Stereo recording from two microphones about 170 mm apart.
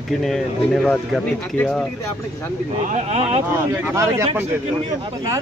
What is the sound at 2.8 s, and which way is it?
Speech, 40° right (ahead or behind).